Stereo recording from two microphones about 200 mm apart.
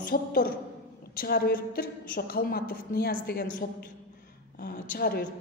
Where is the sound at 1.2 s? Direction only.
50° left (ahead or behind).